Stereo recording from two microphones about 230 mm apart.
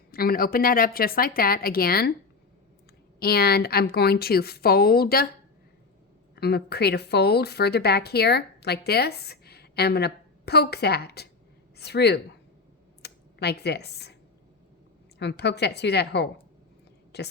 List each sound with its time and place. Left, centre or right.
0.1 s a woman's voice: left
3.2 s a woman's voice: left
6.3 s speech: left
13.0 s computer keyboard: left
15.2 s speech: left